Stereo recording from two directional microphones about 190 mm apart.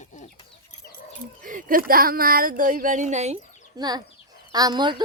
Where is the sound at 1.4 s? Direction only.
45° right (ahead or behind).